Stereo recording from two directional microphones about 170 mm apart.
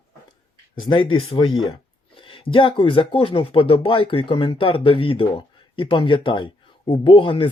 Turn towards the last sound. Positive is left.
turn(degrees=30)  # may be behind; listen again after turning